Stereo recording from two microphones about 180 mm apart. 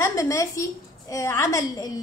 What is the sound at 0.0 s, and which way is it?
A woman's voice, 20° left (ahead or behind).